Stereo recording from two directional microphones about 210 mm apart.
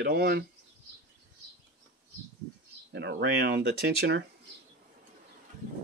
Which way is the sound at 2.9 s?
50° right (ahead or behind).